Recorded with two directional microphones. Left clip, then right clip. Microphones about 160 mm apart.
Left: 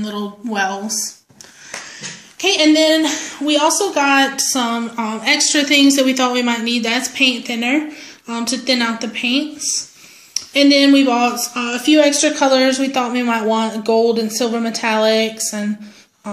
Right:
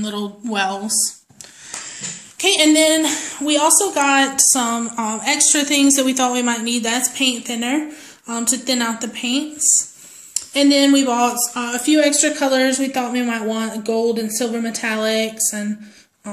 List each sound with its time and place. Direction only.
0.0 s speech: 5° right (ahead or behind)
2.0 s speech: 5° right (ahead or behind)